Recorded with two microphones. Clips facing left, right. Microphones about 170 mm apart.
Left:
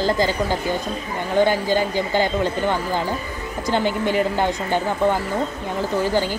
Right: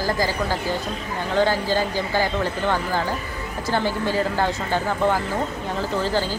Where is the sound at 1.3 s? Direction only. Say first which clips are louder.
Left 3 dB; 15° left (ahead or behind).